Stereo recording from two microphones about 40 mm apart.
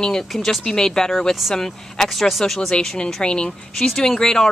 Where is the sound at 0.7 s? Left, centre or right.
Centre.